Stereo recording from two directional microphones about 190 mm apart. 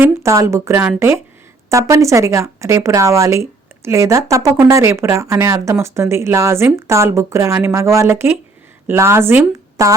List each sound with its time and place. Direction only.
0.0 s a woman's voice: 15° right (ahead or behind)